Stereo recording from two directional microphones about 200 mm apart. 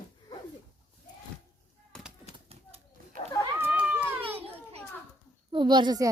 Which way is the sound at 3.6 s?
10° right (ahead or behind).